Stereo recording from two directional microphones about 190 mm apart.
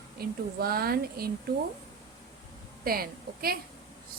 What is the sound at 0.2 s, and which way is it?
A woman's voice, 55° right (ahead or behind).